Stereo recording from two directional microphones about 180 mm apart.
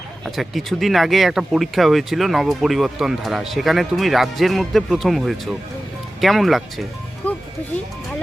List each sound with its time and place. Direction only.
0.3 s speech: centre (ahead or behind)
7.2 s music: 10° left (ahead or behind)